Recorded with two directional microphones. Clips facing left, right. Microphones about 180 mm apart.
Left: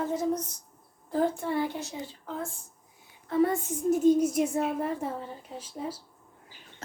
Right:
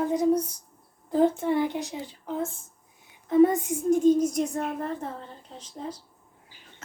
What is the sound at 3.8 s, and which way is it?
A woman's voice, 10° left (ahead or behind).